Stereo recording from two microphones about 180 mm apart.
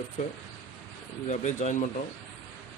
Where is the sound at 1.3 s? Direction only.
40° left (ahead or behind).